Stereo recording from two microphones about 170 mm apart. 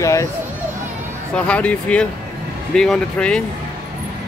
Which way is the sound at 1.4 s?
5° left (ahead or behind).